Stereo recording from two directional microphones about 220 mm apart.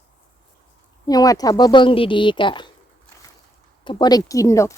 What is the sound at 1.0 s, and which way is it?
Speech, 15° left (ahead or behind).